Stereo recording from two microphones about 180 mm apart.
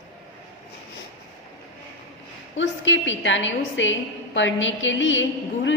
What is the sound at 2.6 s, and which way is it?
A woman's voice, 90° left.